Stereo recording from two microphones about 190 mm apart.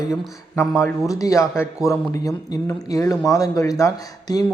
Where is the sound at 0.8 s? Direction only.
20° left (ahead or behind).